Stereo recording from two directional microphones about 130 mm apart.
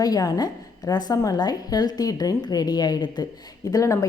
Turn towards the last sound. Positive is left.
turn(degrees=25)  # may be behind; listen again after turning